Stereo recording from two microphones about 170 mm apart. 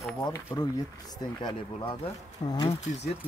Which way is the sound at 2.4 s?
25° left (ahead or behind).